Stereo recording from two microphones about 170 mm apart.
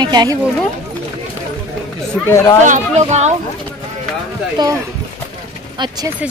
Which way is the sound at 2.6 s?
45° right (ahead or behind).